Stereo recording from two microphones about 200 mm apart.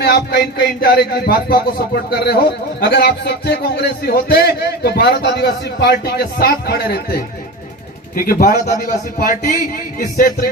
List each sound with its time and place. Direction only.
0.0 s a man's voice: 50° left (ahead or behind)